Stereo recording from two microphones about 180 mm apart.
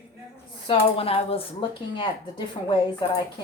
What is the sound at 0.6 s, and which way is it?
A woman's voice, 30° left (ahead or behind).